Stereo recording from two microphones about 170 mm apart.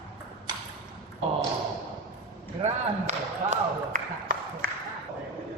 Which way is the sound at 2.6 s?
45° right (ahead or behind).